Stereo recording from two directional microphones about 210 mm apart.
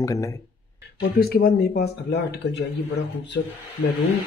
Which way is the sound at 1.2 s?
50° left (ahead or behind).